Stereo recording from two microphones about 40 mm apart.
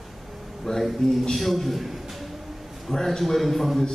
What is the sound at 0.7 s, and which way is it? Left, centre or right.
Speech, centre.